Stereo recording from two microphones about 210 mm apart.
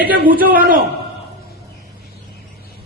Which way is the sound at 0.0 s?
40° right (ahead or behind).